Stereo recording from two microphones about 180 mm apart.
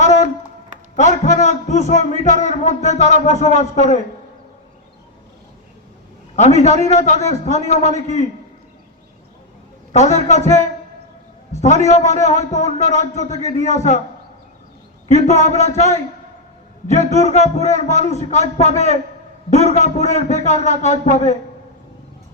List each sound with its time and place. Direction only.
0.0 s a sound: 40° left (ahead or behind)
0.9 s a man's voice: 40° left (ahead or behind)
6.3 s a man's voice: 40° left (ahead or behind)
9.9 s a man's voice: 40° left (ahead or behind)
15.1 s a man's voice: 40° left (ahead or behind)